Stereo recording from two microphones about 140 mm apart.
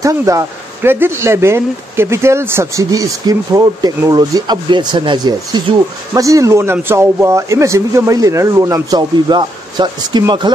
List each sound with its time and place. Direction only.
0.0 s speech: 20° right (ahead or behind)